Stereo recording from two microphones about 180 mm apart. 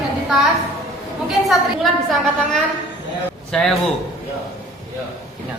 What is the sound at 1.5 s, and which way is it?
A woman's voice, centre (ahead or behind).